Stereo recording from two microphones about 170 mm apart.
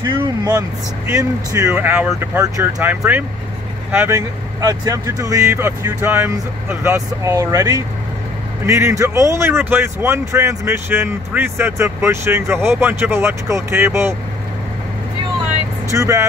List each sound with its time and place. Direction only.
0.0 s speech: 30° right (ahead or behind)
15.9 s speech: 20° right (ahead or behind)